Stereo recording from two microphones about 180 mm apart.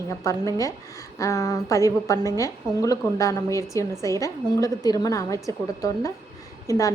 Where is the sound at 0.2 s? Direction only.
15° left (ahead or behind).